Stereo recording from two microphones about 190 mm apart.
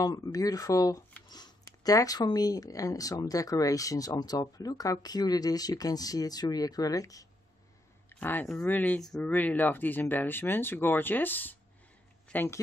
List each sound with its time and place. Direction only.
0.0 s speech: 20° left (ahead or behind)